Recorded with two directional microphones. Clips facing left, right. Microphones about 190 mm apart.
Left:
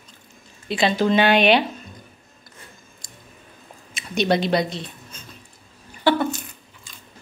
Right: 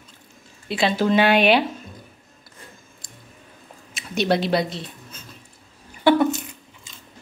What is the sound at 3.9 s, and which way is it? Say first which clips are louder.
A woman's voice: left 1 dB; 5° right (ahead or behind).